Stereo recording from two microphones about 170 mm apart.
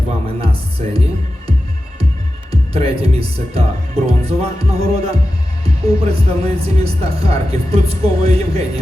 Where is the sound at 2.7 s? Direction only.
35° right (ahead or behind).